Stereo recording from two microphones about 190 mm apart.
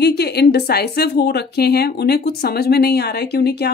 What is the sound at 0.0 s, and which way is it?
Speech, 60° left (ahead or behind).